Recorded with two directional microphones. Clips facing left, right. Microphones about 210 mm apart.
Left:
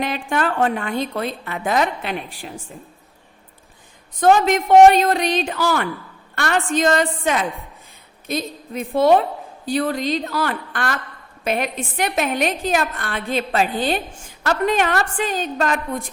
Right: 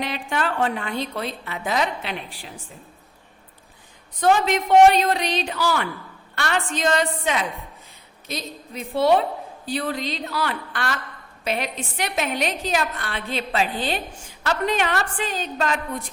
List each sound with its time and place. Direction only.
0.0 s a woman's voice: 50° left (ahead or behind)
4.2 s a woman's voice: 50° left (ahead or behind)